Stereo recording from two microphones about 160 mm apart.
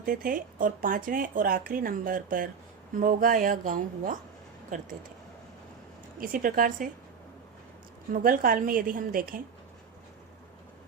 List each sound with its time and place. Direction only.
0.0 s speech: 60° right (ahead or behind)
6.1 s speech: 60° right (ahead or behind)
8.1 s speech: 60° right (ahead or behind)